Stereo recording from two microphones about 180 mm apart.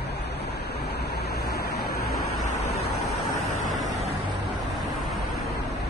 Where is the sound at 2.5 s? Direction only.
40° left (ahead or behind).